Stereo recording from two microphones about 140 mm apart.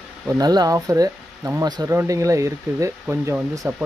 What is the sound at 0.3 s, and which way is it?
Speech, 30° right (ahead or behind).